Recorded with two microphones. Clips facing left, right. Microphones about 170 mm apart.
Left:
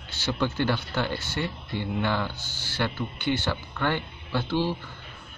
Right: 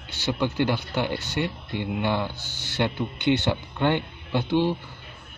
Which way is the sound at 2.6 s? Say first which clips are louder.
Right 3 dB; 20° right (ahead or behind).